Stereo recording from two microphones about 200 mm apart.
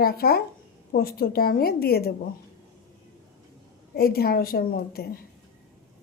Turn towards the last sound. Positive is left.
turn(degrees=50)  # may be behind; listen again after turning